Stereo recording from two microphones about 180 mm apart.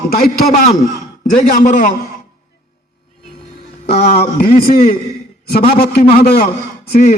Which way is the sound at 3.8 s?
60° left (ahead or behind).